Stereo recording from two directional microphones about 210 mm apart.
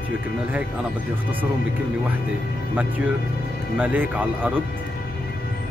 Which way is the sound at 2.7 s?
5° right (ahead or behind).